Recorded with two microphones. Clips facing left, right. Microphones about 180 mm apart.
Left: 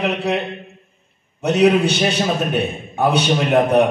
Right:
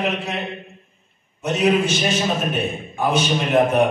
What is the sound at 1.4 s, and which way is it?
A man's voice, 65° left (ahead or behind).